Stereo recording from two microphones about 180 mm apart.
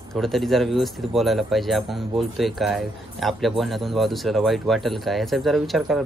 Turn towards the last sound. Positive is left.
turn(degrees=0)  # may be behind; listen again after turning